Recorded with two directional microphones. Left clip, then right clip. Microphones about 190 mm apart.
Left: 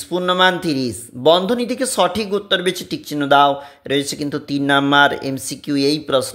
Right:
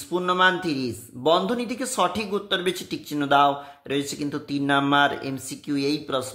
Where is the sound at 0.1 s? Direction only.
30° left (ahead or behind).